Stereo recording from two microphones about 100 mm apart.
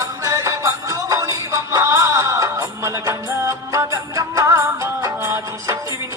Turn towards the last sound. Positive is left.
turn(degrees=-25)  # may be behind; listen again after turning